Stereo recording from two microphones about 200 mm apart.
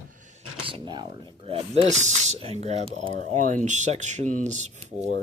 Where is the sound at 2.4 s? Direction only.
30° right (ahead or behind).